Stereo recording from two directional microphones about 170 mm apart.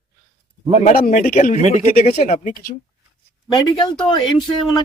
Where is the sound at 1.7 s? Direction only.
40° left (ahead or behind).